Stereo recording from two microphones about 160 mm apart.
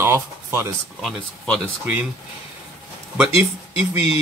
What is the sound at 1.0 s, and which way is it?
Speech, centre (ahead or behind).